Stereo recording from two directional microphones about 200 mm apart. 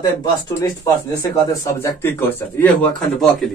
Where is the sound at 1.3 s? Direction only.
15° left (ahead or behind).